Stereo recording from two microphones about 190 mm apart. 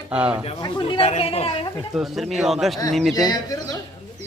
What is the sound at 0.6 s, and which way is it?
Speech, 25° left (ahead or behind).